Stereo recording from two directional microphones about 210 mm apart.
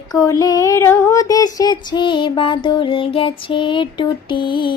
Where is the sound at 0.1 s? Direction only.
15° left (ahead or behind).